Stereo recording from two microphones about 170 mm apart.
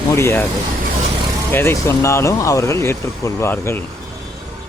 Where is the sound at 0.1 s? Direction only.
15° left (ahead or behind).